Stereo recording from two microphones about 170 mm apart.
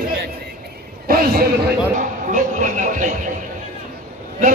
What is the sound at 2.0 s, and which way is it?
Speech, 50° right (ahead or behind).